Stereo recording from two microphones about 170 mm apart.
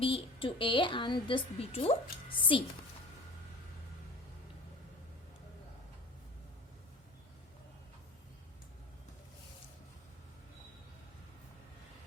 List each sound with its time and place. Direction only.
0.0 s a woman's voice: 30° left (ahead or behind)